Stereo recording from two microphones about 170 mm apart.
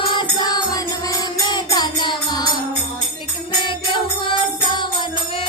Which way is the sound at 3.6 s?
30° left (ahead or behind).